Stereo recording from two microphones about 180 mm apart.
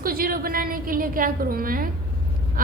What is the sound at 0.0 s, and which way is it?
A woman's voice, 55° right (ahead or behind).